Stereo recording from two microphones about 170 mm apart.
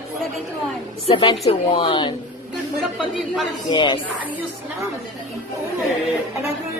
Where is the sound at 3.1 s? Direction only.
Centre (ahead or behind).